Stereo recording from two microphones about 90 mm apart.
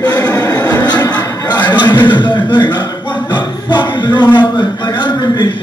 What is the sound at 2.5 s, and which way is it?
Speech, 60° left (ahead or behind).